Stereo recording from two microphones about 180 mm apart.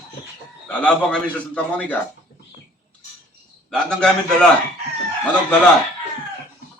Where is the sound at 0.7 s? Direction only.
5° left (ahead or behind).